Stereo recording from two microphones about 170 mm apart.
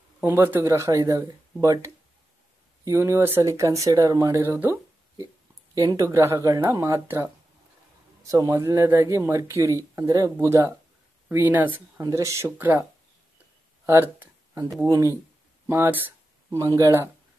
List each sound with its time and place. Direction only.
0.2 s speech: 10° right (ahead or behind)
8.3 s speech: 15° right (ahead or behind)
13.8 s speech: 15° right (ahead or behind)
15.6 s a sound: 10° right (ahead or behind)
16.6 s speech: 20° right (ahead or behind)